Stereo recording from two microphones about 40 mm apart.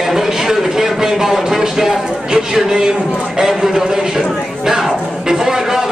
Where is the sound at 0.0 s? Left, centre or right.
Centre.